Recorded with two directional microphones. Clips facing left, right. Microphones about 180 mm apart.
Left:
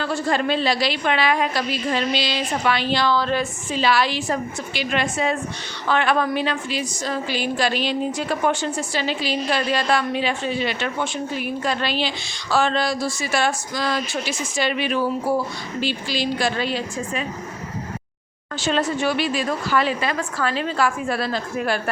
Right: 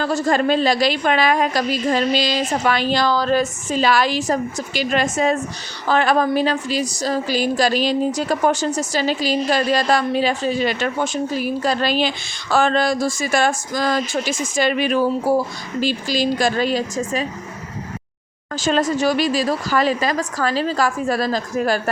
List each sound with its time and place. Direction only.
0.0 s a woman's voice: 40° right (ahead or behind)
18.9 s a woman's voice: 40° right (ahead or behind)